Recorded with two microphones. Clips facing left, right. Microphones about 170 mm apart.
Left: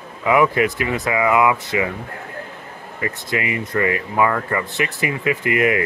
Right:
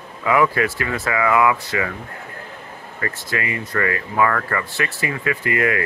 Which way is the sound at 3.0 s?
20° left (ahead or behind).